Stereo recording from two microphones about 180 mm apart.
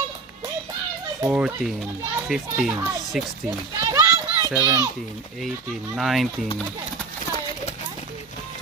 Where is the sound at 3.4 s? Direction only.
15° right (ahead or behind).